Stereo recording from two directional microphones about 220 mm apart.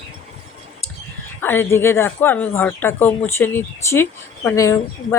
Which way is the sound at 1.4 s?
10° left (ahead or behind).